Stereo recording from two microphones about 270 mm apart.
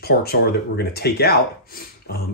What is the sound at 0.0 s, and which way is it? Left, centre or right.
Speech, left.